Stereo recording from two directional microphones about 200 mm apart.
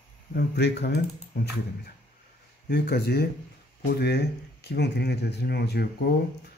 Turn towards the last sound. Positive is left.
turn(degrees=55)  # may be behind; listen again after turning